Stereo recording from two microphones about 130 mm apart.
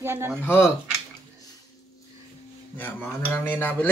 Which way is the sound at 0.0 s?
20° right (ahead or behind).